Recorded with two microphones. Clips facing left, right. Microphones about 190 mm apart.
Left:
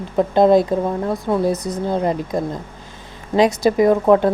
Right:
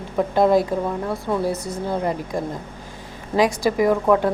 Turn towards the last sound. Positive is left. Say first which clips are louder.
# left 4 dB
turn(degrees=25)  # may be behind; listen again after turning